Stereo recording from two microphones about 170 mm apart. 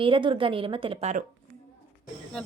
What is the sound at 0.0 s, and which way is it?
A woman's voice, 30° right (ahead or behind).